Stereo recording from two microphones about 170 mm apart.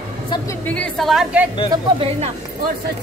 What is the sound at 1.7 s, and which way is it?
Speech, 35° right (ahead or behind).